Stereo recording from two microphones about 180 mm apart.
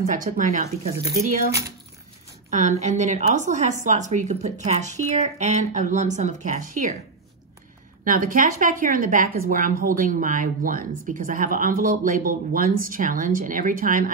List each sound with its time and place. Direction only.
0.0 s a woman's voice: 45° right (ahead or behind)
2.5 s speech: 40° right (ahead or behind)
8.0 s a woman's voice: 50° right (ahead or behind)